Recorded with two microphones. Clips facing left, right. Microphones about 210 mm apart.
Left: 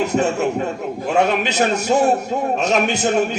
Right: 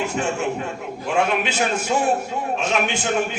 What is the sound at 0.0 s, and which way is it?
A man's voice, 40° left (ahead or behind).